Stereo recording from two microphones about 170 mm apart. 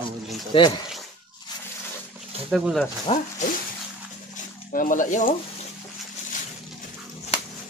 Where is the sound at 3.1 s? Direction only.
35° left (ahead or behind).